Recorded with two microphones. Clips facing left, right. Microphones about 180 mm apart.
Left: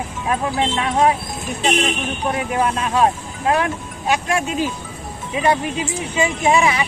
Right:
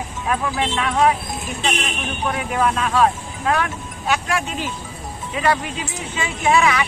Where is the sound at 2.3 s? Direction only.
20° left (ahead or behind).